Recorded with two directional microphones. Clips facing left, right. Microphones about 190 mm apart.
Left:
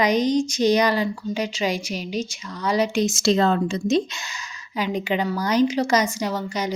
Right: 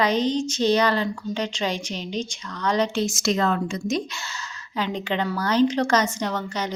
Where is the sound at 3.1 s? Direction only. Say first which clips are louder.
Left 4 dB; 30° left (ahead or behind).